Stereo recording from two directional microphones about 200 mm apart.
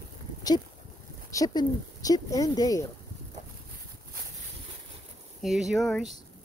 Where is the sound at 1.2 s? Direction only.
15° left (ahead or behind).